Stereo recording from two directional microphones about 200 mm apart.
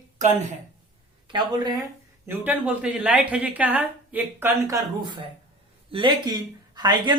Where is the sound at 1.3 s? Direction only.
20° right (ahead or behind).